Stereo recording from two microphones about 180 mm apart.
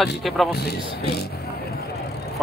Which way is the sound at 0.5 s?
65° left (ahead or behind).